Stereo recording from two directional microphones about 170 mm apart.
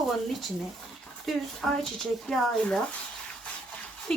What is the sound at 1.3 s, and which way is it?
Speech, centre (ahead or behind).